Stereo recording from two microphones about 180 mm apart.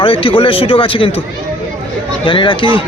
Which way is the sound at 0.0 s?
30° left (ahead or behind).